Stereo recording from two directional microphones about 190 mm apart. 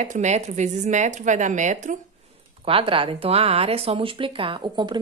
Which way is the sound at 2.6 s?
30° right (ahead or behind).